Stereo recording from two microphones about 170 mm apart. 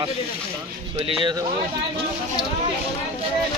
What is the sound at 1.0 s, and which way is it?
Speech, 30° right (ahead or behind).